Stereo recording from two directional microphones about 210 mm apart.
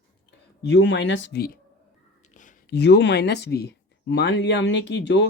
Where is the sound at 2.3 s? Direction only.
35° left (ahead or behind).